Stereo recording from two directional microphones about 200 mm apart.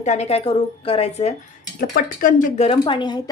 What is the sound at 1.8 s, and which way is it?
A woman's voice, 40° left (ahead or behind).